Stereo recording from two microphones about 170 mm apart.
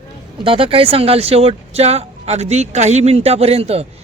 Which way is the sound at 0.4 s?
30° right (ahead or behind).